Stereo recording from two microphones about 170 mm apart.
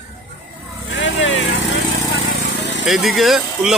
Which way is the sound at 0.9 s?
90° left.